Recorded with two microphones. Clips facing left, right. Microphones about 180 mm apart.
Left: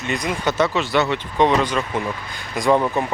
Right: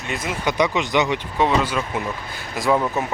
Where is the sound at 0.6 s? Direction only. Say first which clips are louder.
Even; 15° right (ahead or behind).